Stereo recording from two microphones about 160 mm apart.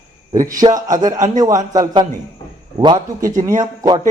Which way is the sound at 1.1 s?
50° right (ahead or behind).